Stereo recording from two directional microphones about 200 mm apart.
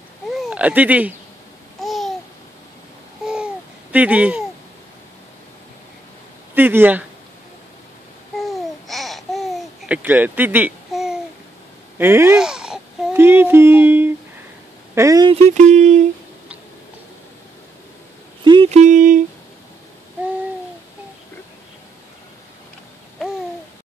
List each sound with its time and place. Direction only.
0.3 s a sound: 5° right (ahead or behind)
1.8 s babbling: centre (ahead or behind)
3.3 s babbling: 5° right (ahead or behind)
6.5 s speech: 10° right (ahead or behind)
8.4 s babbling: centre (ahead or behind)
12.0 s speech: 10° right (ahead or behind)
15.4 s a sound: 35° right (ahead or behind)
18.4 s speech: 25° right (ahead or behind)